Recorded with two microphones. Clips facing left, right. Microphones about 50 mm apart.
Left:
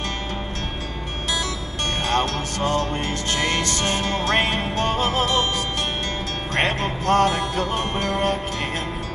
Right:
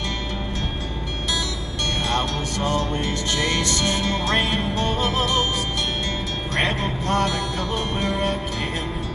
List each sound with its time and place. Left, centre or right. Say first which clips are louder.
2.0 s music: left 4 dB; left
6.5 s music: left 1 dB; left